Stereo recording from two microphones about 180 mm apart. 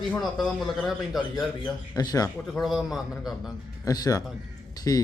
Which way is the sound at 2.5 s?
Centre (ahead or behind).